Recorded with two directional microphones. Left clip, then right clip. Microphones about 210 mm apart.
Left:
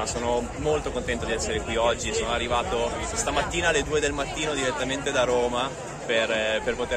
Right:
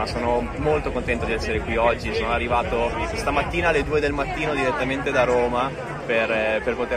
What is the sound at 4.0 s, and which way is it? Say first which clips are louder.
Speech: right 3 dB; 25° left (ahead or behind).